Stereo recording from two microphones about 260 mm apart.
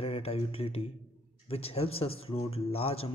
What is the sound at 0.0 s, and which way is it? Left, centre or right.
Speech, left.